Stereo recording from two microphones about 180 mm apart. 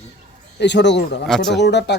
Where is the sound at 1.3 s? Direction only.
Centre (ahead or behind).